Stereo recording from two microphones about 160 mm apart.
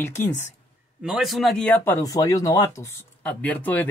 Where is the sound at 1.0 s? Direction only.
Centre (ahead or behind).